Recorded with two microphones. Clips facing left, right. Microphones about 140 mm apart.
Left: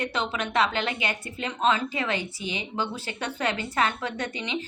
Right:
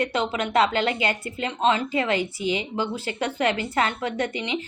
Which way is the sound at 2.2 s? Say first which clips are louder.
Right 7 dB; 25° left (ahead or behind).